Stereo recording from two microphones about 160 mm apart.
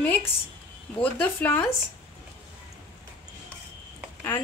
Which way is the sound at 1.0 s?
10° left (ahead or behind).